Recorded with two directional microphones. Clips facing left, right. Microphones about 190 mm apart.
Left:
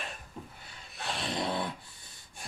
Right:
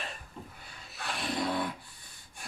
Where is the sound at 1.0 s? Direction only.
25° left (ahead or behind).